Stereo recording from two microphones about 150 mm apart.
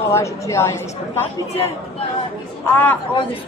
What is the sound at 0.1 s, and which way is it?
A woman's voice, 20° left (ahead or behind).